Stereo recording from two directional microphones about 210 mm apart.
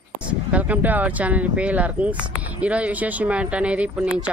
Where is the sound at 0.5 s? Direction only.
5° right (ahead or behind).